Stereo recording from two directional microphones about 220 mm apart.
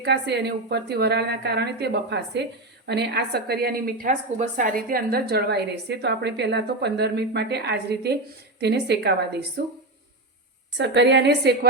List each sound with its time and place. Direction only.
0.0 s a woman's voice: 50° right (ahead or behind)
10.8 s a woman's voice: 50° right (ahead or behind)